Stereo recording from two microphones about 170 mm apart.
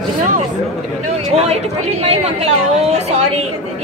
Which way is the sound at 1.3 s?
40° right (ahead or behind).